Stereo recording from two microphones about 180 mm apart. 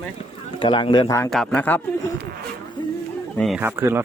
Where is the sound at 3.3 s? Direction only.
Centre (ahead or behind).